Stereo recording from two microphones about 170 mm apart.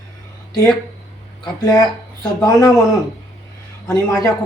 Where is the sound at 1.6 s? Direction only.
20° left (ahead or behind).